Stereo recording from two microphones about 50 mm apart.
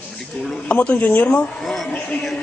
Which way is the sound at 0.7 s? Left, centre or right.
Left.